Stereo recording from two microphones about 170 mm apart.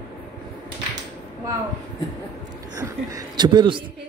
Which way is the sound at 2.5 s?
20° right (ahead or behind).